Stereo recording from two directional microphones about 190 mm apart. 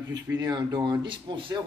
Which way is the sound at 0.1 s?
20° right (ahead or behind).